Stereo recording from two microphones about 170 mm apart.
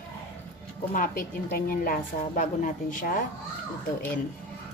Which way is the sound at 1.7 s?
55° left (ahead or behind).